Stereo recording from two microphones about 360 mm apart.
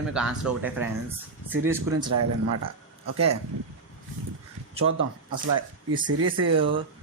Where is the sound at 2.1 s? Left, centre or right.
Right.